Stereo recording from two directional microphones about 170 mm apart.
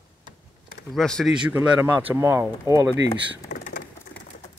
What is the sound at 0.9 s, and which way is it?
Speech, 5° left (ahead or behind).